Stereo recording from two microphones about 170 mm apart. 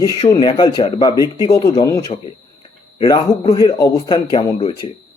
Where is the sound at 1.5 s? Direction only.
25° left (ahead or behind).